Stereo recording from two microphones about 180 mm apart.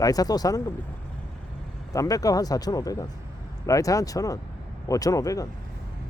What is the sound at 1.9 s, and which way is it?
Speech, 20° left (ahead or behind).